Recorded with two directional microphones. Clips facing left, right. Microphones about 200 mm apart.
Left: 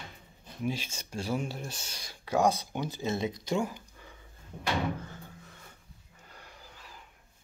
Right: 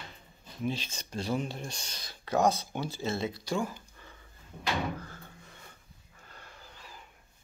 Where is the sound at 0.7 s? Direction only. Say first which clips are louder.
Even; 10° left (ahead or behind).